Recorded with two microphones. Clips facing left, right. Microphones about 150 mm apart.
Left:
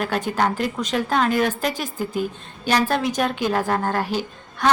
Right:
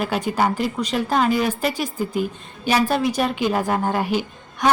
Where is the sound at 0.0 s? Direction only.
5° right (ahead or behind).